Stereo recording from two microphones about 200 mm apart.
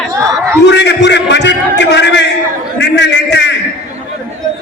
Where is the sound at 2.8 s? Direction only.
60° left (ahead or behind).